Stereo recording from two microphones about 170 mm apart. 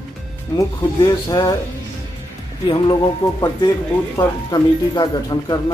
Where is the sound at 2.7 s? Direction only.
25° left (ahead or behind).